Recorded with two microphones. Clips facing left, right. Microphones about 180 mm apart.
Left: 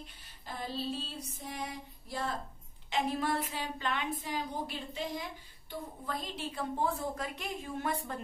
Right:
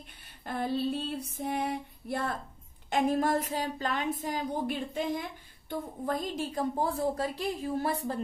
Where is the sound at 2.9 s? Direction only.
45° right (ahead or behind).